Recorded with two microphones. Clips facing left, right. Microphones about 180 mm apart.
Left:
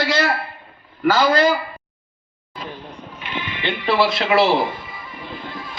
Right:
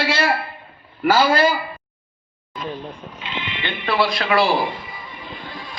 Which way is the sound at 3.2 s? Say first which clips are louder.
Left 1 dB; 20° right (ahead or behind).